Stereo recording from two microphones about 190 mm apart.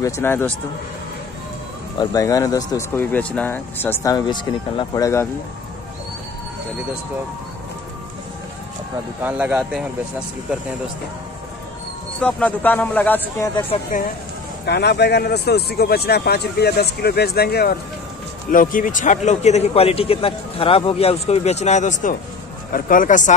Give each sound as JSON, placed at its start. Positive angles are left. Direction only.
{"t": 0.0, "sound": "speech", "side_deg": 10}
{"t": 2.0, "sound": "speech", "side_deg": 20}
{"t": 9.2, "sound": "speech", "side_deg": -5}
{"t": 12.2, "sound": "speech", "side_deg": 5}
{"t": 13.9, "sound": "speech", "side_deg": 45}
{"t": 14.7, "sound": "speech", "side_deg": 60}
{"t": 18.5, "sound": "a man's voice", "side_deg": 45}